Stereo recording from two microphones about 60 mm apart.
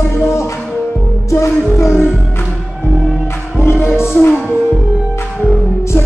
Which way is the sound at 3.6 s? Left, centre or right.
Left.